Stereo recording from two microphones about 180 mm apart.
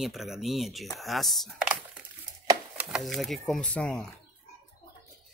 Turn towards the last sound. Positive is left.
turn(degrees=5)  # may be behind; listen again after turning